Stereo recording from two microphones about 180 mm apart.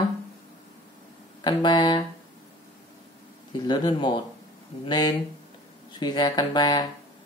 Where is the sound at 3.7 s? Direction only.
25° left (ahead or behind).